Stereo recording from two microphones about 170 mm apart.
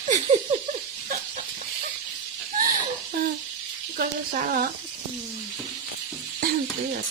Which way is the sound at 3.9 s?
60° right (ahead or behind).